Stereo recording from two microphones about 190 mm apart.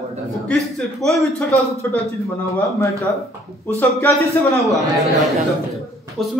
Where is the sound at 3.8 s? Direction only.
15° left (ahead or behind).